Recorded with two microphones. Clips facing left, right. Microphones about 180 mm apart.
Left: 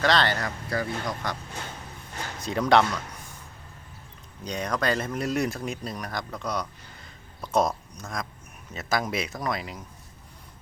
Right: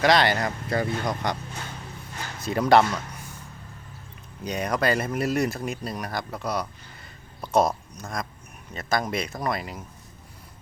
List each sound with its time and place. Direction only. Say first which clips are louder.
0.0 s speech: right 3 dB; 15° right (ahead or behind)
2.4 s speech: right 2 dB; 5° right (ahead or behind)
4.4 s speech: right 3 dB; 10° right (ahead or behind)